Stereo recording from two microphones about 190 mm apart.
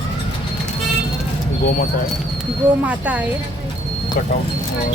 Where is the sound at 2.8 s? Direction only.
5° right (ahead or behind).